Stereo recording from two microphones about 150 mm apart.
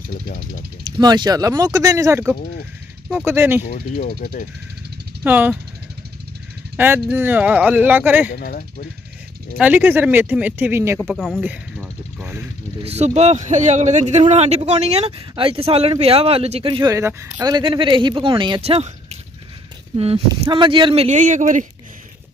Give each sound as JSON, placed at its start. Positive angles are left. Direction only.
{"t": 0.9, "sound": "speech", "side_deg": -25}
{"t": 3.6, "sound": "speech", "side_deg": 60}
{"t": 5.2, "sound": "speech", "side_deg": -10}
{"t": 6.8, "sound": "speech", "side_deg": -10}
{"t": 8.3, "sound": "speech", "side_deg": 85}
{"t": 9.6, "sound": "speech", "side_deg": -10}
{"t": 11.0, "sound": "speech", "side_deg": 0}
{"t": 11.4, "sound": "speech", "side_deg": -10}
{"t": 12.2, "sound": "a sound", "side_deg": -10}
{"t": 12.8, "sound": "speech", "side_deg": -45}
{"t": 20.0, "sound": "speech", "side_deg": -35}